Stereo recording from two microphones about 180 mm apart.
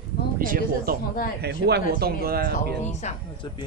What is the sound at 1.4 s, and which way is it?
Speech, 65° right (ahead or behind).